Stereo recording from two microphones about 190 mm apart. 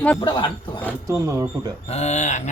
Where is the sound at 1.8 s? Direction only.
35° left (ahead or behind).